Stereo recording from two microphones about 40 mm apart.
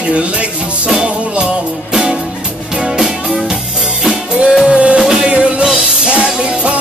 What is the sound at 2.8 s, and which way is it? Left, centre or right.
Music, centre.